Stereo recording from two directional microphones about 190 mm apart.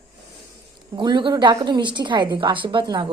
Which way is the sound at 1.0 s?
25° right (ahead or behind).